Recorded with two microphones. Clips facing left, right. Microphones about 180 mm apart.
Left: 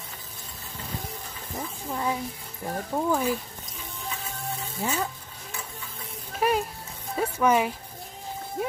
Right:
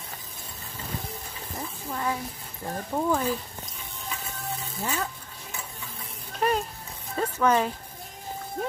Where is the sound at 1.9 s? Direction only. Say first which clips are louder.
Left 1 dB; 15° left (ahead or behind).